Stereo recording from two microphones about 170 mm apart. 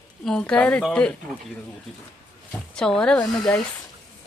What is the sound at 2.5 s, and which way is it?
Speech, 5° left (ahead or behind).